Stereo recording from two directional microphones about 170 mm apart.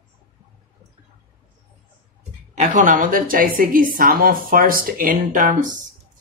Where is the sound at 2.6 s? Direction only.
45° right (ahead or behind).